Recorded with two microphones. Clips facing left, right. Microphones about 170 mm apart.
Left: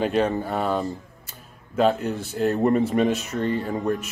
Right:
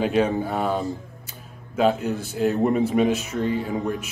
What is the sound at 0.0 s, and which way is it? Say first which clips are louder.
Speech: right 1 dB; 5° right (ahead or behind).